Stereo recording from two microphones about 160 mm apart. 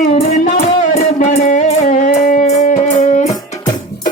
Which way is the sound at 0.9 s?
55° left (ahead or behind).